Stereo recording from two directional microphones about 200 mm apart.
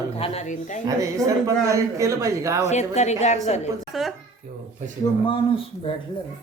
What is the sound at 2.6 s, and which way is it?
A woman's voice, 35° left (ahead or behind).